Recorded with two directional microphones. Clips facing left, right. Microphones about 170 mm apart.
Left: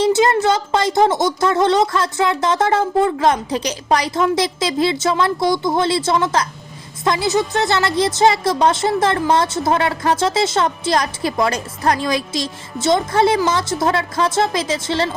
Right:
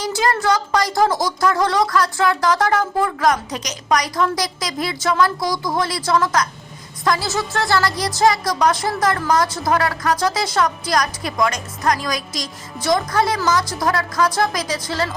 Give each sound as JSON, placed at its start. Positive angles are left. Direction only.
{"t": 0.0, "sound": "a woman's voice", "side_deg": 20}